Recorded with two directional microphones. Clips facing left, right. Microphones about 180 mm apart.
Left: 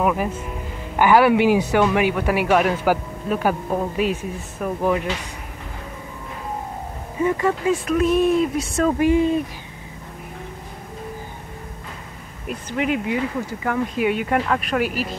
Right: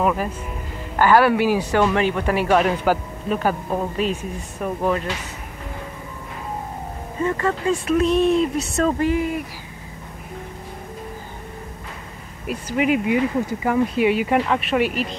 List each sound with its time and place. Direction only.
0.0 s speech: 10° left (ahead or behind)
7.2 s speech: 10° left (ahead or behind)
7.7 s speech: centre (ahead or behind); by 9.4 s 20° left (ahead or behind)
12.4 s speech: 5° right (ahead or behind)
13.9 s speech: 5° right (ahead or behind)